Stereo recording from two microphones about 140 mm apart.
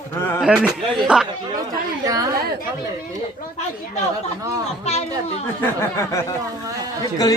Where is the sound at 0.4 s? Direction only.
5° right (ahead or behind).